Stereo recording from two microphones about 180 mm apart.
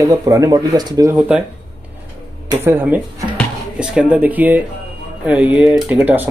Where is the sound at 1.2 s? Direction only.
5° right (ahead or behind).